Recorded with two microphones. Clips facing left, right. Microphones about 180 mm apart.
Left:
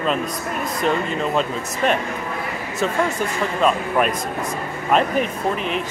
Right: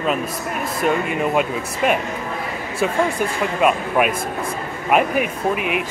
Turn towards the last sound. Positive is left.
turn(degrees=-10)  # may be behind; listen again after turning